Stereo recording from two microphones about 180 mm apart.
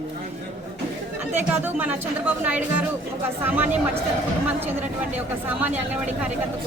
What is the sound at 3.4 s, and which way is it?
Speech, 10° right (ahead or behind).